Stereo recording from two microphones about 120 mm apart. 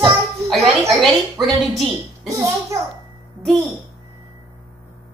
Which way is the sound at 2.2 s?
25° right (ahead or behind).